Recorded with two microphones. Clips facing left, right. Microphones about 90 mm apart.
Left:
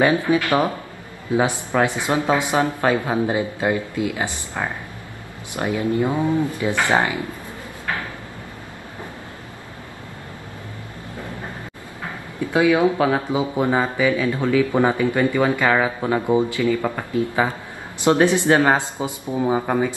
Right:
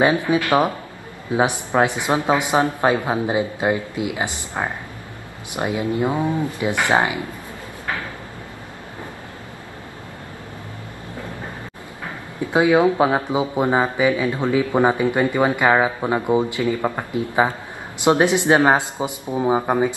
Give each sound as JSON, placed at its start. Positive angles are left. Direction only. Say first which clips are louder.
{"t": 0.0, "sound": "speech", "louder": "even", "side_deg": -20}
{"t": 12.4, "sound": "speech", "louder": "right 1 dB", "side_deg": -20}